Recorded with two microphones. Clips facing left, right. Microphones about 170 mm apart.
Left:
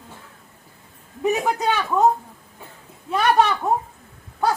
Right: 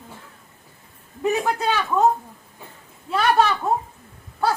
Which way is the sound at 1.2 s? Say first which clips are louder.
Left 1 dB; 15° left (ahead or behind).